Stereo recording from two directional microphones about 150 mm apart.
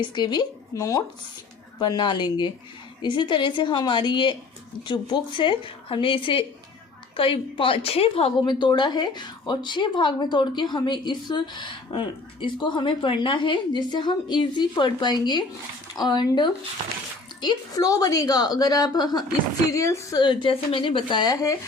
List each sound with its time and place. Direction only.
0.0 s a woman's voice: 30° left (ahead or behind)